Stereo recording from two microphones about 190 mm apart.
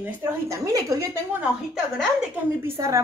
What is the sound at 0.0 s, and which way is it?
Speech, 15° right (ahead or behind).